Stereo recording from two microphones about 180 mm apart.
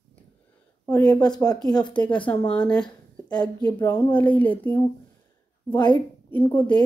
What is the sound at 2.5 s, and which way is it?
Speech, 5° left (ahead or behind).